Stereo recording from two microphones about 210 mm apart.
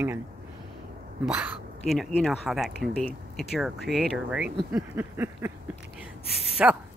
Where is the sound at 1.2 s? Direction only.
5° right (ahead or behind).